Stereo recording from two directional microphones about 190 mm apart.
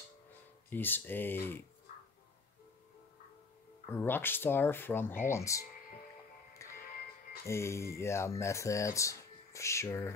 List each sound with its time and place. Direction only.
0.7 s speech: 10° left (ahead or behind)
3.8 s speech: 10° left (ahead or behind)
6.6 s music: 15° left (ahead or behind)
7.4 s speech: 15° left (ahead or behind)